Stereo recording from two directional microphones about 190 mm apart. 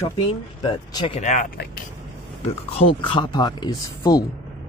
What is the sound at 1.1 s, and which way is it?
Speech, 40° left (ahead or behind).